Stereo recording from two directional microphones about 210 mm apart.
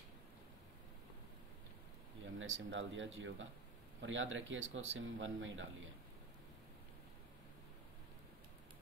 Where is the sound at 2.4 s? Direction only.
65° right (ahead or behind).